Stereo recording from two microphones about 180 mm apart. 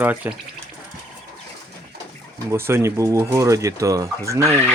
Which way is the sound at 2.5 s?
15° right (ahead or behind).